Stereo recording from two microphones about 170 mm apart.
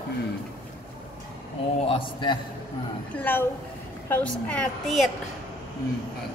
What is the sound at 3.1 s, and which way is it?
A woman's voice, 10° left (ahead or behind).